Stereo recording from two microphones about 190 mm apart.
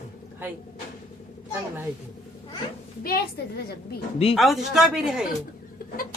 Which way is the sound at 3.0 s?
55° left (ahead or behind).